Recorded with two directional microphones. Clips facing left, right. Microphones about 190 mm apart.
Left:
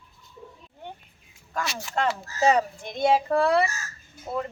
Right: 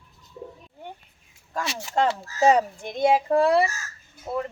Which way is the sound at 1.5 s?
30° right (ahead or behind).